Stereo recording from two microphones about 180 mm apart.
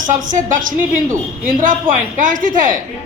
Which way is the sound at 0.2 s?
45° right (ahead or behind).